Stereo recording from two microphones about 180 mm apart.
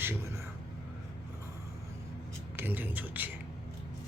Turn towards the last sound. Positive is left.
turn(degrees=-10)  # may be behind; listen again after turning